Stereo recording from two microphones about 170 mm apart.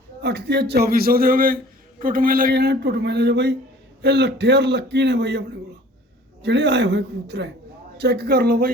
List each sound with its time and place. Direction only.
0.2 s a man's voice: 75° right (ahead or behind)
6.4 s speech: 90° right
7.9 s a man's voice: 70° right (ahead or behind)